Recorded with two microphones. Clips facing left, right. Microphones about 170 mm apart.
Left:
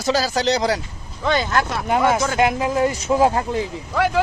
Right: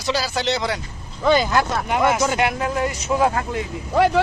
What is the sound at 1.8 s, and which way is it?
Speech, 30° left (ahead or behind).